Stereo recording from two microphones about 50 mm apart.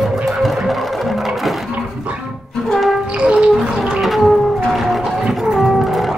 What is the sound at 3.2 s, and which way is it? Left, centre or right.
Music, right.